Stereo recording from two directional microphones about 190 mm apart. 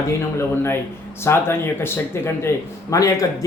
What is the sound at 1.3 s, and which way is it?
A man's voice, 15° left (ahead or behind).